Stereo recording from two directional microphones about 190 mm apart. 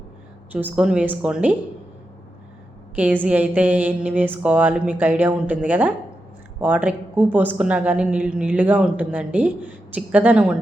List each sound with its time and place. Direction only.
0.5 s a woman's voice: 5° right (ahead or behind)
2.9 s a woman's voice: 10° right (ahead or behind)